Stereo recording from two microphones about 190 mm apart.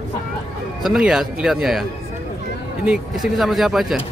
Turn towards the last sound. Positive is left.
turn(degrees=0)  # may be behind; listen again after turning